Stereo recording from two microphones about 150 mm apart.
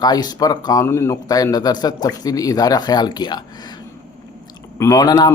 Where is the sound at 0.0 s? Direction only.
25° left (ahead or behind).